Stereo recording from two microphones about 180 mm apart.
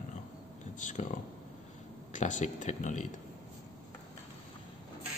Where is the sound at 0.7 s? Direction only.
45° left (ahead or behind).